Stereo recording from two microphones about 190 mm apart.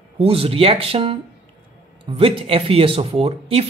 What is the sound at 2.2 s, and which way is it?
A man's voice, 30° right (ahead or behind).